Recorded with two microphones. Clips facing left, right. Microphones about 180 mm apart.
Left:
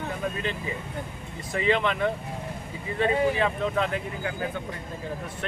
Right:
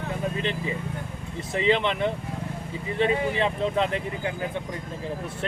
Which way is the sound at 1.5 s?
25° right (ahead or behind).